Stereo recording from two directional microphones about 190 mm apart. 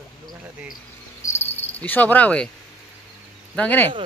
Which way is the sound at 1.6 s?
10° left (ahead or behind).